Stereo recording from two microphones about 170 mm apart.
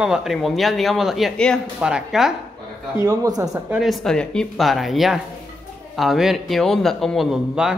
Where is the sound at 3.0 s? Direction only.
20° right (ahead or behind).